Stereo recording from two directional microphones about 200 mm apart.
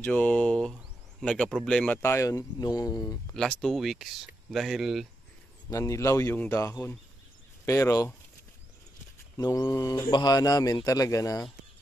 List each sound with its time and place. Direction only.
0.0 s speech: 10° left (ahead or behind)
3.3 s speech: centre (ahead or behind)
5.7 s speech: 15° left (ahead or behind)
9.4 s a man's voice: 20° left (ahead or behind)